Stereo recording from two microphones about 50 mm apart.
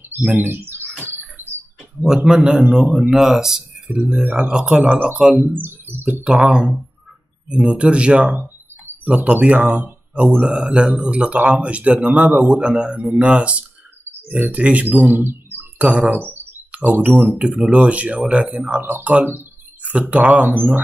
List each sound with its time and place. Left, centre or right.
0.4 s speech: right
1.0 s bird: right
2.0 s a man's voice: centre; by 5.5 s right
5.5 s speech: right
6.2 s a man's voice: centre; by 15.6 s right
15.8 s a man's voice: right
16.1 s speech: right
16.7 s a man's voice: right
20.5 s speech: right